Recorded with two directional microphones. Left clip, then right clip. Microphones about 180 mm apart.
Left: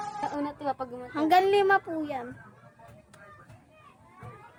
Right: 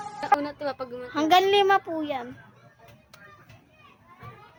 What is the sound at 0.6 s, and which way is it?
Speech, 25° left (ahead or behind).